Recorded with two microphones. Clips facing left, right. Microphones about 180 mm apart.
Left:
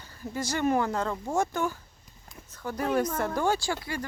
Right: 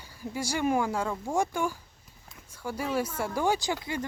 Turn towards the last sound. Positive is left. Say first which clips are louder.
# even
turn(degrees=-20)  # may be behind; listen again after turning